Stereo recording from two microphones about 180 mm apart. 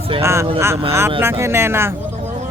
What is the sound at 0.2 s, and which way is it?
Speech, 15° right (ahead or behind).